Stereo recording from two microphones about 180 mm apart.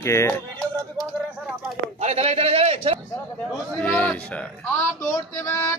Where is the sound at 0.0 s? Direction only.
15° left (ahead or behind).